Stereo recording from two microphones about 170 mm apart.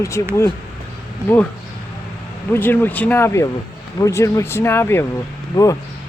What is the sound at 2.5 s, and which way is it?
Speech, 10° left (ahead or behind).